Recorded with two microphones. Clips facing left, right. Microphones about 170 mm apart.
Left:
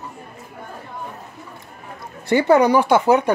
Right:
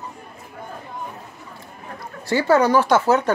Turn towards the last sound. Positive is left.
turn(degrees=15)  # may be behind; listen again after turning